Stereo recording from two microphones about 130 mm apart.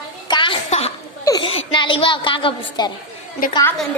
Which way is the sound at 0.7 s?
55° left (ahead or behind).